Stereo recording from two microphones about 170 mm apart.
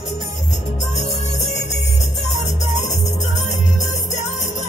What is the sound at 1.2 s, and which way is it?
Music, 40° left (ahead or behind).